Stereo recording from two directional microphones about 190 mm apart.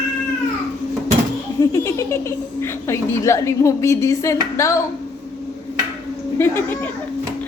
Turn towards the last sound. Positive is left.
turn(degrees=10)  # may be behind; listen again after turning